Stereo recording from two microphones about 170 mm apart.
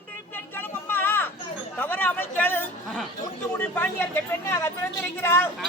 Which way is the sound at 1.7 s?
10° left (ahead or behind).